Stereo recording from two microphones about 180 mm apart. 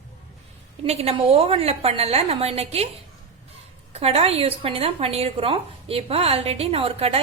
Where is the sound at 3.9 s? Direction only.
35° right (ahead or behind).